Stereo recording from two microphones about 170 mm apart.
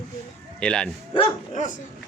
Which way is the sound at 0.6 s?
5° left (ahead or behind).